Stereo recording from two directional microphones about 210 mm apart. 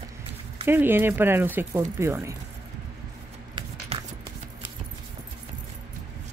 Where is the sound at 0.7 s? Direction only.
10° right (ahead or behind).